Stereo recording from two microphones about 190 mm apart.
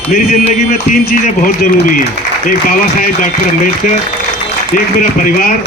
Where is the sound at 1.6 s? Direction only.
50° left (ahead or behind).